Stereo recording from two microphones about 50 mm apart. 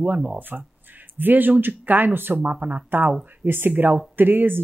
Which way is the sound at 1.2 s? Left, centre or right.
Right.